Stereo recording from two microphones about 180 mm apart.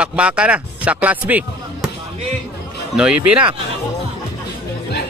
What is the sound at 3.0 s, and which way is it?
Speech, 5° right (ahead or behind).